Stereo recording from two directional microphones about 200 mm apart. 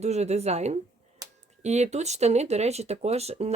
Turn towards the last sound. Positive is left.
turn(degrees=-30)  # may be behind; listen again after turning